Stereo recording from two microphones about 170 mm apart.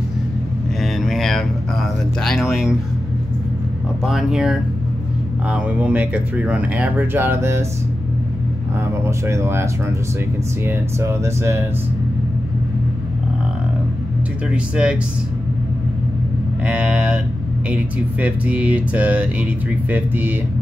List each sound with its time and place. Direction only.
0.7 s a sound: centre (ahead or behind)
4.0 s speech: centre (ahead or behind)
8.8 s speech: 15° right (ahead or behind)
14.5 s speech: 5° right (ahead or behind)
16.6 s speech: 5° right (ahead or behind)